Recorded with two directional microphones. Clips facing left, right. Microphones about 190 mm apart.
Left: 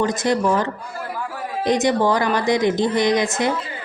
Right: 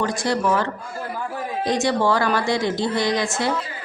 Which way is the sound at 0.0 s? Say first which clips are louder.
Left 3 dB; 20° left (ahead or behind).